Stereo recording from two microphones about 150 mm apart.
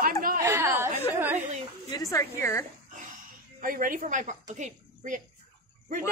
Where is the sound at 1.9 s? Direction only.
20° left (ahead or behind).